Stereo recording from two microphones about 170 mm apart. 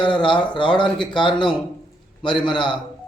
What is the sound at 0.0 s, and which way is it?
Speech, 30° left (ahead or behind).